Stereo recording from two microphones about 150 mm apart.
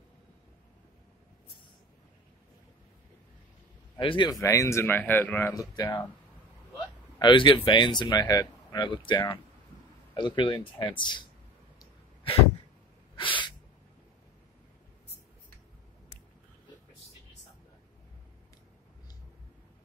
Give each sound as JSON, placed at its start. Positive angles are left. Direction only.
{"t": 4.0, "sound": "speech", "side_deg": 35}
{"t": 4.3, "sound": "speech", "side_deg": 20}
{"t": 5.5, "sound": "speech", "side_deg": 25}
{"t": 7.2, "sound": "speech", "side_deg": 30}
{"t": 13.1, "sound": "sneeze", "side_deg": 35}